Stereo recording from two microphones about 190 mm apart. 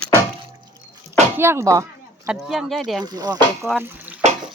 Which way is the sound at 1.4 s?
15° right (ahead or behind).